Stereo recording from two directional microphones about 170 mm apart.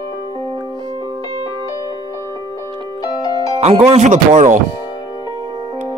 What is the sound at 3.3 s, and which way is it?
Speech, 35° right (ahead or behind).